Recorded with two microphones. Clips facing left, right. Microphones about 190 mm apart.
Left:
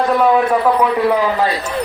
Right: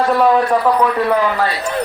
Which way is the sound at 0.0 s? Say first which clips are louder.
Even; centre (ahead or behind).